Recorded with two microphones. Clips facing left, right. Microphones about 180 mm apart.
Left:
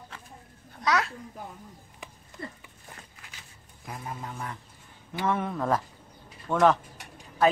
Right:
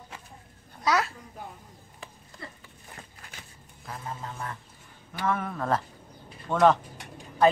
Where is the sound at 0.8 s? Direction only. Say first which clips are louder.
Right 1 dB; centre (ahead or behind).